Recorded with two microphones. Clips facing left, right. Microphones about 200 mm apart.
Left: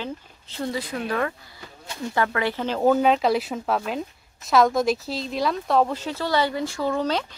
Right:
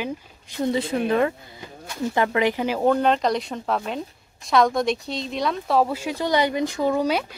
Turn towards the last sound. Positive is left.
turn(degrees=-10)  # may be behind; listen again after turning